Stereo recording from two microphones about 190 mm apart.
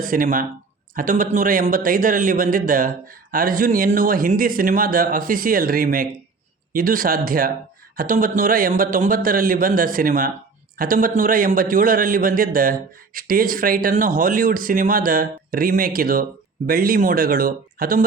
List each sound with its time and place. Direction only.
0.0 s speech: 45° right (ahead or behind)